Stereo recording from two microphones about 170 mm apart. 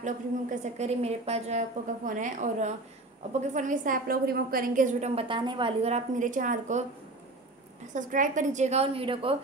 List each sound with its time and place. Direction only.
0.0 s a woman's voice: 45° right (ahead or behind)
2.0 s a woman's voice: 50° right (ahead or behind)
7.9 s a woman's voice: 50° right (ahead or behind); by 9.4 s 30° right (ahead or behind)